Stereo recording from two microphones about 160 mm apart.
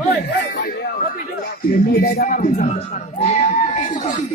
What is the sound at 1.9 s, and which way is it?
A man's voice, 80° left.